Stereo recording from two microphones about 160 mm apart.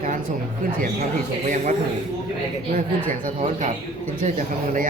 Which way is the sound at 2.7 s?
60° right (ahead or behind).